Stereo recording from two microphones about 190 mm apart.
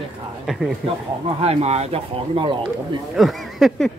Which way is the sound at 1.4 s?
35° right (ahead or behind).